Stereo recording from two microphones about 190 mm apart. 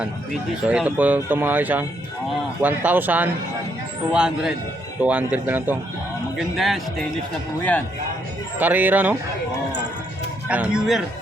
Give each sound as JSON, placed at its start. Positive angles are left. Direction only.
{"t": 0.6, "sound": "speech", "side_deg": -5}
{"t": 7.6, "sound": "speech", "side_deg": 10}
{"t": 8.5, "sound": "speech", "side_deg": -10}
{"t": 10.5, "sound": "speech", "side_deg": -5}